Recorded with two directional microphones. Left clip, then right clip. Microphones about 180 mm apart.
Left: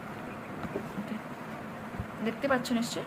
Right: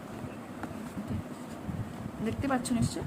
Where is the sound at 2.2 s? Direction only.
20° right (ahead or behind).